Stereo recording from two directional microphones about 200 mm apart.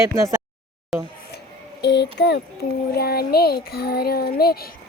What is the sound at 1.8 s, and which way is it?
Speech, 60° left (ahead or behind).